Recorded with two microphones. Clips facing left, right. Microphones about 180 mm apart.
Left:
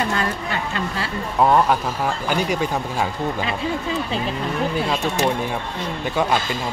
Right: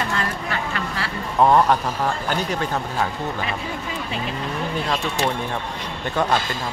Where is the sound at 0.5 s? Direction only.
25° left (ahead or behind).